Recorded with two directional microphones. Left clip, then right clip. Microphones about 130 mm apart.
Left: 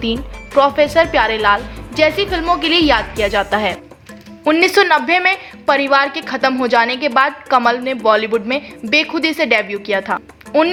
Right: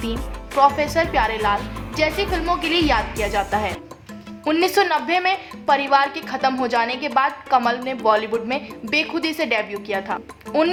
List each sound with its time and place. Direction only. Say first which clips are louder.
0.0 s a woman's voice: left 7 dB; 35° left (ahead or behind)